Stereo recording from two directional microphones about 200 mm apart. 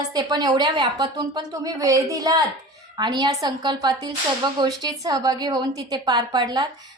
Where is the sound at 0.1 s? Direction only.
20° right (ahead or behind).